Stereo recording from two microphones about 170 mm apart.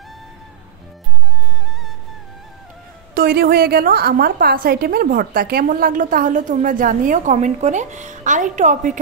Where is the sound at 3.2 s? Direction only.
60° right (ahead or behind).